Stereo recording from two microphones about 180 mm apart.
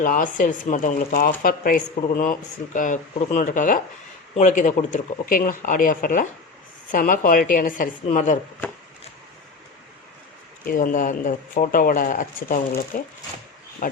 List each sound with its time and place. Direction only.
0.0 s speech: 50° left (ahead or behind)
10.7 s speech: 50° left (ahead or behind)